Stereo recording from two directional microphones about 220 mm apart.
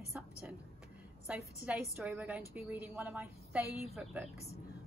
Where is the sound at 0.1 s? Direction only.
5° right (ahead or behind).